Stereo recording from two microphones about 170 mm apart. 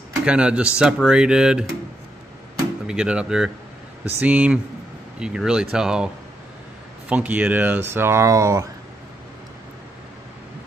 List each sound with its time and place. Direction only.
0.2 s speech: 5° right (ahead or behind)
2.9 s speech: 5° right (ahead or behind)
7.1 s speech: 10° right (ahead or behind)